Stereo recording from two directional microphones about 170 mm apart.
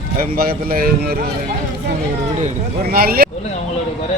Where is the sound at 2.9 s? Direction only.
60° right (ahead or behind).